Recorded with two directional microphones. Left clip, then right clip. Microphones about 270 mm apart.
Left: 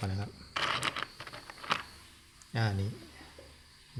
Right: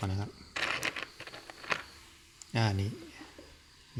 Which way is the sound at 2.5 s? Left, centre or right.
Right.